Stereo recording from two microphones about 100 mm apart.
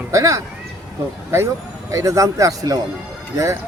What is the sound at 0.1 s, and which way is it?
Speech, 30° right (ahead or behind).